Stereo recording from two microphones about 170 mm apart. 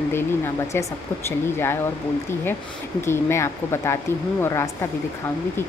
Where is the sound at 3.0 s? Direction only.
15° left (ahead or behind).